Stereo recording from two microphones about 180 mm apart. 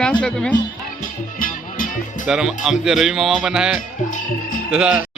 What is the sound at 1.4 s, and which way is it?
Music, 50° left (ahead or behind).